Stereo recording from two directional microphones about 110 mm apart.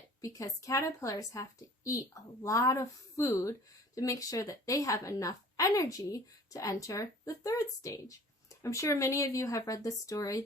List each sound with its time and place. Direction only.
0.2 s a woman's voice: 30° left (ahead or behind)